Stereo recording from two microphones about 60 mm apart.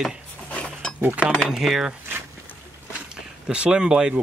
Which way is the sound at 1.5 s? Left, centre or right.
Centre.